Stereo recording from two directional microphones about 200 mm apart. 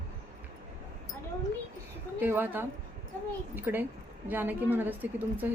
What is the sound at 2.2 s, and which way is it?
A woman's voice, 10° right (ahead or behind).